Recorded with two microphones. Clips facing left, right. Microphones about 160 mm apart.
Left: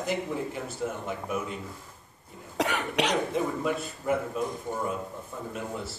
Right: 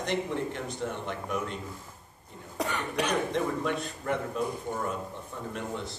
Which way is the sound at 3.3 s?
5° left (ahead or behind).